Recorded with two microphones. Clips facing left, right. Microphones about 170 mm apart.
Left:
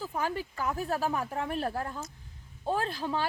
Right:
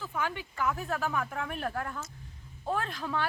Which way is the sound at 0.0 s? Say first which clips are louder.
Left 2 dB; 35° left (ahead or behind).